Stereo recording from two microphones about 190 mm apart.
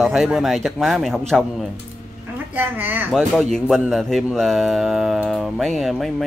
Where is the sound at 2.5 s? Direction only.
10° right (ahead or behind).